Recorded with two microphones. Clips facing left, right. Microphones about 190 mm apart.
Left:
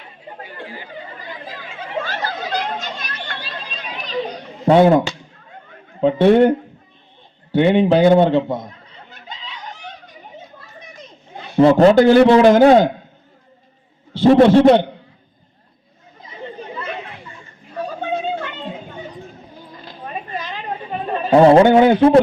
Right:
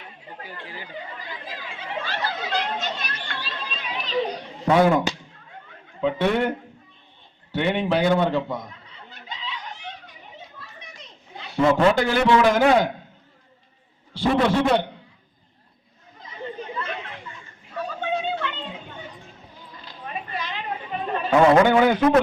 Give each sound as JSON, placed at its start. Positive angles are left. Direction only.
{"t": 0.6, "sound": "speech", "side_deg": 45}
{"t": 2.0, "sound": "chatter", "side_deg": 45}
{"t": 4.6, "sound": "a man's voice", "side_deg": 30}
{"t": 6.0, "sound": "a man's voice", "side_deg": 30}
{"t": 8.9, "sound": "a sound", "side_deg": 45}
{"t": 10.8, "sound": "children playing", "side_deg": 45}
{"t": 11.6, "sound": "a man's voice", "side_deg": 35}
{"t": 14.4, "sound": "a man's voice", "side_deg": 30}
{"t": 17.7, "sound": "children playing", "side_deg": 40}
{"t": 19.8, "sound": "a sound", "side_deg": 40}
{"t": 21.2, "sound": "a man's voice", "side_deg": 35}